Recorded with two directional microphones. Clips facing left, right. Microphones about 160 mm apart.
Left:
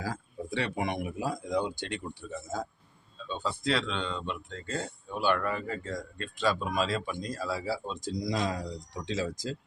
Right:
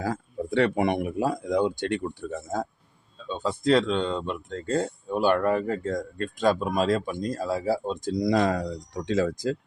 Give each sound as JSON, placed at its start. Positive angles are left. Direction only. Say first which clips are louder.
{"t": 0.0, "sound": "speech", "louder": "right 7 dB", "side_deg": -60}
{"t": 3.2, "sound": "speech", "louder": "right 7 dB", "side_deg": -45}